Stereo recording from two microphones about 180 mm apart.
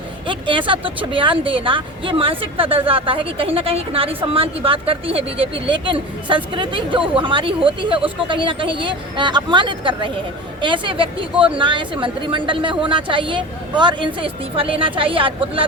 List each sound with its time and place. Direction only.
0.3 s speech: 25° right (ahead or behind)